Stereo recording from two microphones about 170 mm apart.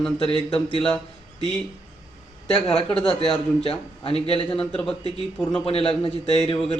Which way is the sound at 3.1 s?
35° left (ahead or behind).